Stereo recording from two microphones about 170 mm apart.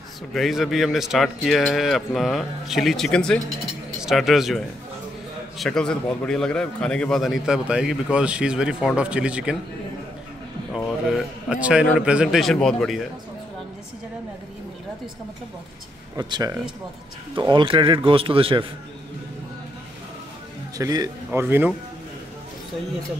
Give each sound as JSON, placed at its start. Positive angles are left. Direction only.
{"t": 0.3, "sound": "a man's voice", "side_deg": 0}
{"t": 10.7, "sound": "a man's voice", "side_deg": 0}
{"t": 16.2, "sound": "a man's voice", "side_deg": -25}
{"t": 20.7, "sound": "speech", "side_deg": -20}